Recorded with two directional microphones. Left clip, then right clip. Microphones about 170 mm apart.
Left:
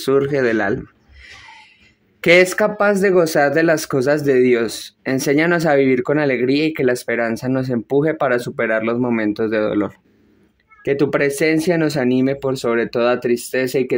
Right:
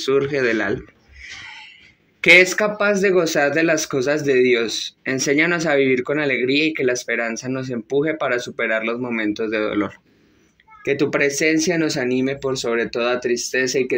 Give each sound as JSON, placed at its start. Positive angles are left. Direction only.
{"t": 0.0, "sound": "speech", "side_deg": 40}
{"t": 1.2, "sound": "a sound", "side_deg": 20}
{"t": 2.2, "sound": "speech", "side_deg": 35}